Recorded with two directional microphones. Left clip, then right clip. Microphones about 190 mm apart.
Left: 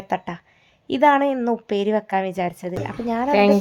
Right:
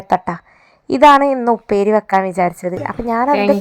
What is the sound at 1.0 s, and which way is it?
A woman's voice, 15° right (ahead or behind).